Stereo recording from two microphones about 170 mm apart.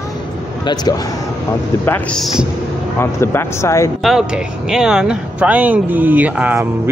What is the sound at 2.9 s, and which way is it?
Speech, 15° left (ahead or behind).